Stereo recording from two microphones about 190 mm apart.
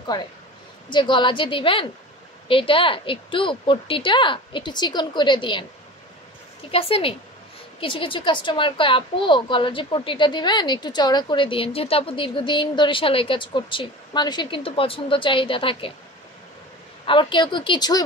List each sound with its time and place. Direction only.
0.8 s a woman's voice: 25° left (ahead or behind)
6.7 s a woman's voice: 30° left (ahead or behind)
17.0 s a woman's voice: 25° left (ahead or behind)